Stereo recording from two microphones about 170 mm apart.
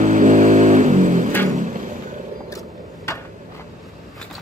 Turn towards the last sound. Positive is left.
turn(degrees=20)  # may be behind; listen again after turning